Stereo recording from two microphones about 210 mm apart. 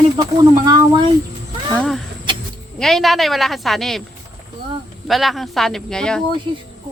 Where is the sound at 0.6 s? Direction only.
20° right (ahead or behind).